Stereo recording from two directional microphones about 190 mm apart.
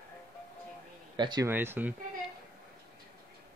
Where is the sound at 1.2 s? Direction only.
25° right (ahead or behind).